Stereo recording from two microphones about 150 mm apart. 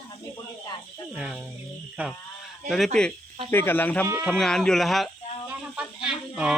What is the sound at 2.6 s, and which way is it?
Speech, centre (ahead or behind).